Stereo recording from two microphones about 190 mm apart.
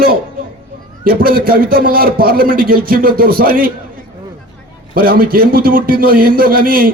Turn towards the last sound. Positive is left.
turn(degrees=-50)  # may be behind; listen again after turning